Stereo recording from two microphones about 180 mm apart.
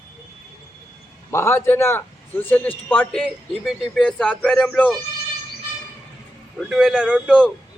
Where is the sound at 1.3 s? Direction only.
15° left (ahead or behind).